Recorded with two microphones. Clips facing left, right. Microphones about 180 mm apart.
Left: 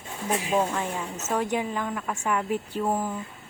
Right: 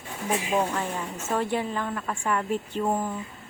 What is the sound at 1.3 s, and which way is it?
A woman's voice, 15° left (ahead or behind).